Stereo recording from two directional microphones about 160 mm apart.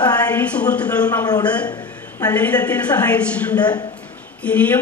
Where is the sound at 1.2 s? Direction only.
25° left (ahead or behind).